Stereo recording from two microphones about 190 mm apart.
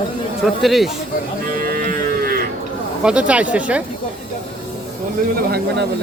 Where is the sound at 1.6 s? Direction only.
45° right (ahead or behind).